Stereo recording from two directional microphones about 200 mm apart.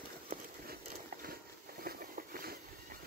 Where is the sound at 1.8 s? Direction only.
45° right (ahead or behind).